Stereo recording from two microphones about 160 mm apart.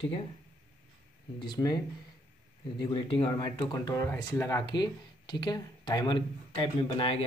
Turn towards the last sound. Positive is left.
turn(degrees=35)  # may be behind; listen again after turning